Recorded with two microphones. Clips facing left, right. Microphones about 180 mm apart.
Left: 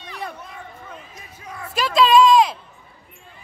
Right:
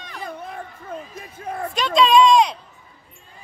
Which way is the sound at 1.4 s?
55° right (ahead or behind).